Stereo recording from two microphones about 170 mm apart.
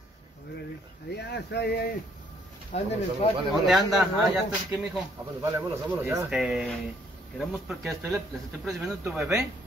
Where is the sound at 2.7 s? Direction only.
40° left (ahead or behind).